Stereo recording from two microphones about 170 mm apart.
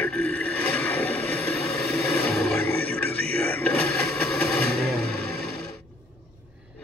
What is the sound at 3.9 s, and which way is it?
Vehicle, centre (ahead or behind).